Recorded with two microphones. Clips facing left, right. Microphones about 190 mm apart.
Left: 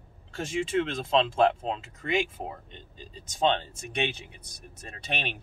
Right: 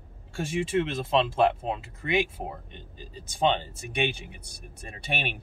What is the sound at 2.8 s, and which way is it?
Speech, 55° right (ahead or behind).